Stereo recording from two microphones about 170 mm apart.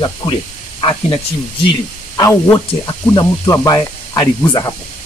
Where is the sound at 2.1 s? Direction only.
20° left (ahead or behind).